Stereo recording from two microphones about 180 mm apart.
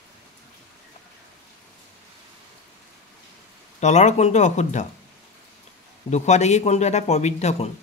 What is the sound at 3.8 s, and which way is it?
A man's voice, 40° left (ahead or behind).